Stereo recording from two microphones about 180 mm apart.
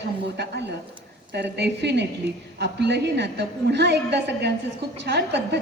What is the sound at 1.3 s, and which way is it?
A woman's voice, 70° right (ahead or behind).